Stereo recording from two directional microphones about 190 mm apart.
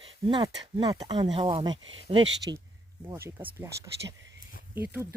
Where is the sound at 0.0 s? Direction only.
25° right (ahead or behind).